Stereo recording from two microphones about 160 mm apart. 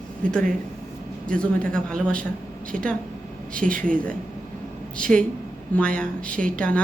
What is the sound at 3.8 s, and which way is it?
Speech, 5° left (ahead or behind).